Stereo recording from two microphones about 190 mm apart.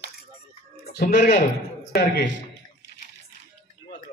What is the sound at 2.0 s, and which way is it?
Speech, 60° left (ahead or behind).